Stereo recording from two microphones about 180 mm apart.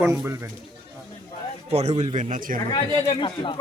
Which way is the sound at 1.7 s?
35° right (ahead or behind).